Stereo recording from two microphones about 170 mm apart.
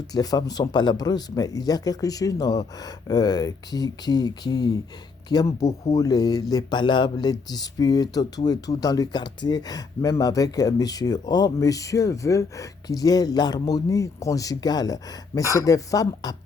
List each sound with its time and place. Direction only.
0.1 s speech: 25° left (ahead or behind)